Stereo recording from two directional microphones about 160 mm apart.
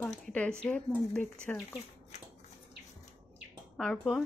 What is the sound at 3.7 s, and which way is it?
Speech, 5° left (ahead or behind).